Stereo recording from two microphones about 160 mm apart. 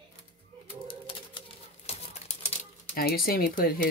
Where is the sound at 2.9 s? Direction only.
65° left (ahead or behind).